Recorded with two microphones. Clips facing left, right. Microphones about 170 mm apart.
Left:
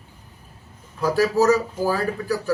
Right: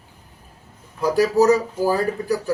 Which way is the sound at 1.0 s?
15° right (ahead or behind).